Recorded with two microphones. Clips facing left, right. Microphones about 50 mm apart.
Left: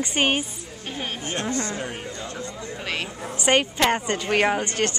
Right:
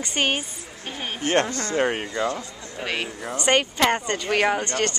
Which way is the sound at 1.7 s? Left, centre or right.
Right.